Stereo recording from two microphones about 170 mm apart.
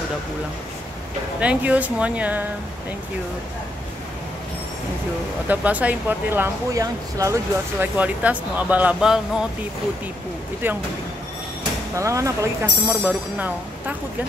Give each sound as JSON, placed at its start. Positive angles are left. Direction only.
{"t": 1.4, "sound": "speech", "side_deg": -10}
{"t": 5.5, "sound": "speech", "side_deg": -10}
{"t": 7.8, "sound": "speech", "side_deg": -10}
{"t": 11.9, "sound": "speech", "side_deg": -20}